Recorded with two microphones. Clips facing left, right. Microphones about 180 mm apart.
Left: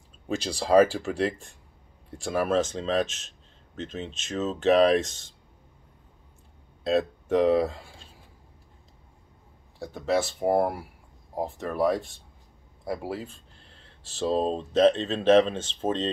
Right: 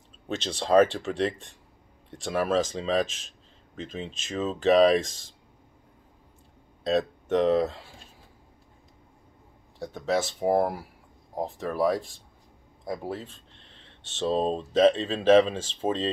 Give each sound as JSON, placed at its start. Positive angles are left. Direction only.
{"t": 0.6, "sound": "speech", "side_deg": 5}
{"t": 6.8, "sound": "speech", "side_deg": 0}
{"t": 9.8, "sound": "speech", "side_deg": 0}